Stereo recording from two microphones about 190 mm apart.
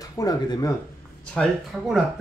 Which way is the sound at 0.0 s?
20° left (ahead or behind).